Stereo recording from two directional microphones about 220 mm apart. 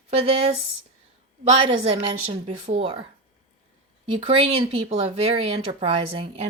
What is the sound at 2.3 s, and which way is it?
Speech, 25° right (ahead or behind).